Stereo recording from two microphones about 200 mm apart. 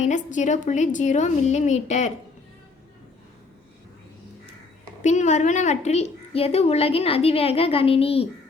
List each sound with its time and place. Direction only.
0.0 s a woman's voice: 35° left (ahead or behind)
5.0 s a woman's voice: 35° left (ahead or behind)